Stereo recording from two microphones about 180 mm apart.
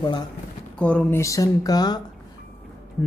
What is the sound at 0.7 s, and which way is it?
Speech, 5° left (ahead or behind).